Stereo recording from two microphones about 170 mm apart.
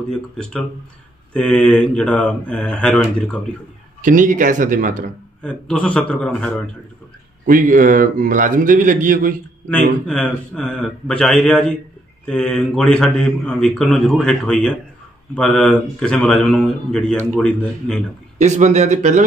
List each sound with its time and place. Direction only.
0.1 s a man's voice: 5° left (ahead or behind)
4.0 s a man's voice: 50° right (ahead or behind)
5.4 s speech: 5° left (ahead or behind)
7.4 s a man's voice: 50° right (ahead or behind)
9.7 s a man's voice: 5° left (ahead or behind)
18.4 s a man's voice: 40° right (ahead or behind)